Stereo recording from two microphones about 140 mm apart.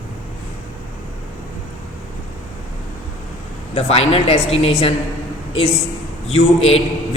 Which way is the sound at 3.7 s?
45° left (ahead or behind).